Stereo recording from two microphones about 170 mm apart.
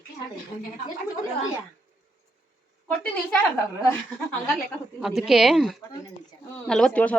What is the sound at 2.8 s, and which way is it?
Speech, 10° left (ahead or behind).